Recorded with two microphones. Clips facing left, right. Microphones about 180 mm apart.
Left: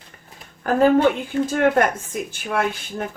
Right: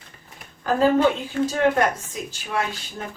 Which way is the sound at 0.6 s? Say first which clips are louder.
Left 2 dB; 60° left (ahead or behind).